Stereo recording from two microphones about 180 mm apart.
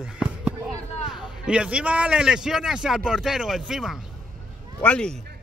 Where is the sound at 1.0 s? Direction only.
5° right (ahead or behind).